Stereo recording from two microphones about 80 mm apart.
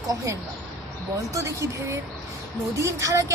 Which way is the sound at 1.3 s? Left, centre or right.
Right.